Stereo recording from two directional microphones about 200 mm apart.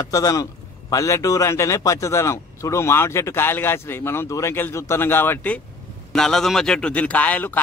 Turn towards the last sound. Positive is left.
turn(degrees=10)  # may be behind; listen again after turning